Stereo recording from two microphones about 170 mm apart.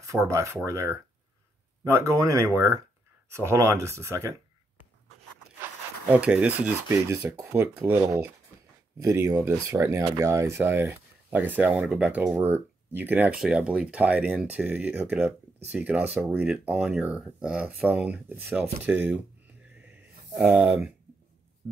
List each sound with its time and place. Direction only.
0.1 s speech: 20° right (ahead or behind)
5.6 s speech: 10° right (ahead or behind)
20.3 s speech: 10° right (ahead or behind)